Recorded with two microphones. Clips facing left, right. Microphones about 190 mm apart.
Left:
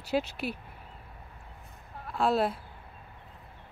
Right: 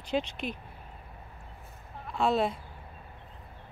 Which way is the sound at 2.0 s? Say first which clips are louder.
Even; 5° left (ahead or behind).